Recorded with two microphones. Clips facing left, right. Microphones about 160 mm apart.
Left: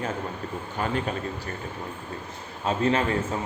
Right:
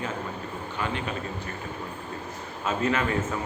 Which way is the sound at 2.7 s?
30° left (ahead or behind).